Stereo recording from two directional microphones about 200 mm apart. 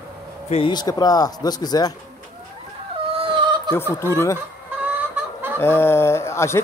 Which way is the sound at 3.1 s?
25° right (ahead or behind).